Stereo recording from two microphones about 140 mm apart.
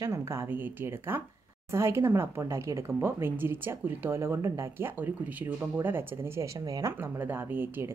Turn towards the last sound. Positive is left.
turn(degrees=-15)  # may be behind; listen again after turning